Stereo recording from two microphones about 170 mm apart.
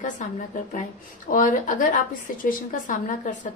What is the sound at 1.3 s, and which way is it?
A woman's voice, 50° left (ahead or behind).